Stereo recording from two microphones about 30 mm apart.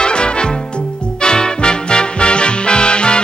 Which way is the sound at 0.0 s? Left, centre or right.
Left.